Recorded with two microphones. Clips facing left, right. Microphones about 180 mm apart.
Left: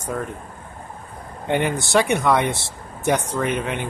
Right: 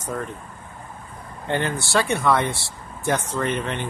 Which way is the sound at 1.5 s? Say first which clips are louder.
Left 3 dB; 20° left (ahead or behind).